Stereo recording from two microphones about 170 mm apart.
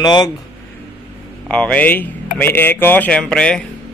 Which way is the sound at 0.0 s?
25° left (ahead or behind).